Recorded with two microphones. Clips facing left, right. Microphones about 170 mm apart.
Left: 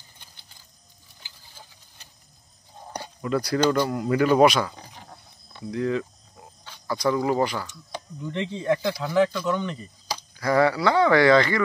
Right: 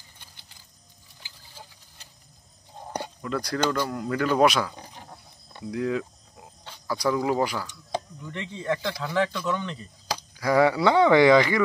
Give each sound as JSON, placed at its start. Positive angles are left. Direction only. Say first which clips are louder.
{"t": 3.2, "sound": "speech", "louder": "left 5 dB", "side_deg": 5}
{"t": 4.5, "sound": "speech", "louder": "left 2 dB", "side_deg": 0}
{"t": 8.3, "sound": "speech", "louder": "left 4 dB", "side_deg": 20}
{"t": 10.3, "sound": "speech", "louder": "even", "side_deg": -10}